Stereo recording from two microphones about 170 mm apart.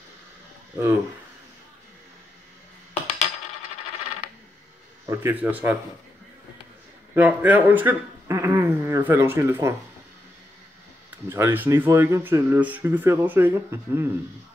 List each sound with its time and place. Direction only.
2.9 s coin: 40° left (ahead or behind)
5.0 s speech: 15° right (ahead or behind)
7.2 s speech: 10° right (ahead or behind)
11.2 s speech: 15° right (ahead or behind)